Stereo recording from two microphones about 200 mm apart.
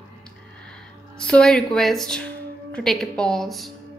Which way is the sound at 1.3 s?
5° left (ahead or behind).